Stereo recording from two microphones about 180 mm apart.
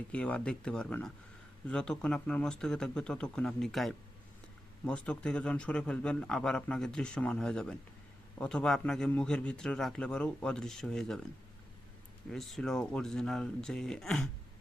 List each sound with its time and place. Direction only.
0.1 s a man's voice: 5° left (ahead or behind)
12.3 s a man's voice: centre (ahead or behind)